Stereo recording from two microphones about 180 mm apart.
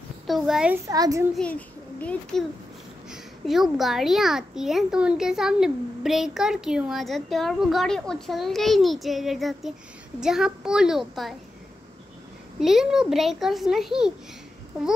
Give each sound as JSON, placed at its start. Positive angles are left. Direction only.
{"t": 0.3, "sound": "a child's voice", "side_deg": 0}
{"t": 0.8, "sound": "a child's voice", "side_deg": -20}
{"t": 1.3, "sound": "a child's voice", "side_deg": 5}
{"t": 12.5, "sound": "a child's voice", "side_deg": 0}